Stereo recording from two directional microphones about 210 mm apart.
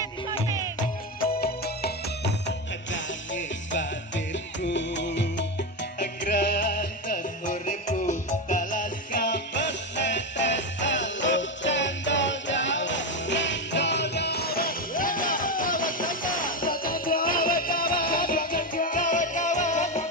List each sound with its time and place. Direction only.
0.7 s music: 45° left (ahead or behind)
7.1 s music: 40° left (ahead or behind)
9.2 s music: 55° left (ahead or behind); by 20.1 s 35° left (ahead or behind)